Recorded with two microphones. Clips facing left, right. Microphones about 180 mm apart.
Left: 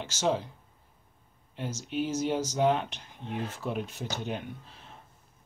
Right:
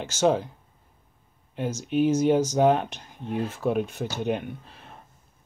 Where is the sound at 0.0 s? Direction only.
50° right (ahead or behind).